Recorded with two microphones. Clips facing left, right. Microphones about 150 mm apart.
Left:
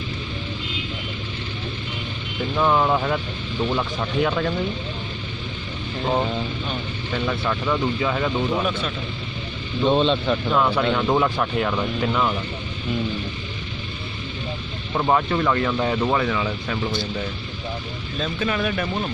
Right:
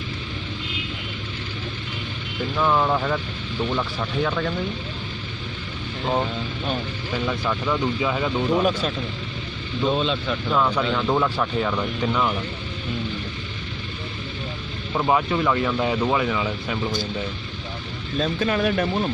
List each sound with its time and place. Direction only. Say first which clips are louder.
2.5 s speech: left 2 dB; 15° left (ahead or behind)
7.2 s speech: left 1 dB; centre (ahead or behind)
8.6 s speech: right 3 dB; 40° right (ahead or behind)
9.9 s speech: left 4 dB; 40° left (ahead or behind)
10.5 s speech: even; 5° left (ahead or behind)
15.0 s speech: left 1 dB; centre (ahead or behind)
18.2 s speech: right 2 dB; 40° right (ahead or behind)